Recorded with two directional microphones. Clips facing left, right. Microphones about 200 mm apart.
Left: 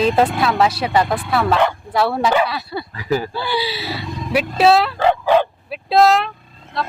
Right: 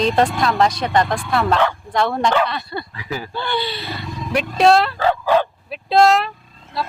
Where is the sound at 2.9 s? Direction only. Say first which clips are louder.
Left 8 dB; 40° left (ahead or behind).